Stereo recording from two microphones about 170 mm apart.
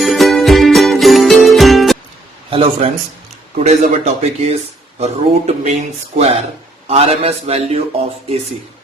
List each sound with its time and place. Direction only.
0.0 s music: centre (ahead or behind)
2.5 s speech: 35° right (ahead or behind)